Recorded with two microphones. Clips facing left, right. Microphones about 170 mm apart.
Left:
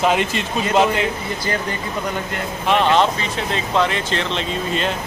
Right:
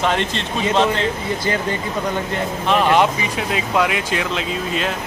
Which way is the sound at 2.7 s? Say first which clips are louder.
Even; 10° right (ahead or behind).